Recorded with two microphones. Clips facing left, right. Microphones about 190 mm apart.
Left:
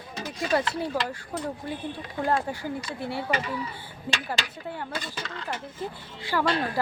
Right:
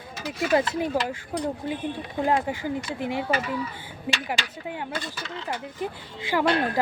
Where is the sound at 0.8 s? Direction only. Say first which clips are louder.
Right 3 dB; 15° right (ahead or behind).